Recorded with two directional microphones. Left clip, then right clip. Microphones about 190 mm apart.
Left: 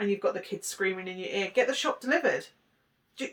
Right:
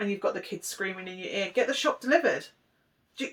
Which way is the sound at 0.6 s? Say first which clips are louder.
Left 3 dB; 20° left (ahead or behind).